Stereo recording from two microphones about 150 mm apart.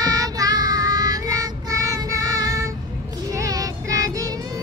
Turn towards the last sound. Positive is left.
turn(degrees=-25)  # may be behind; listen again after turning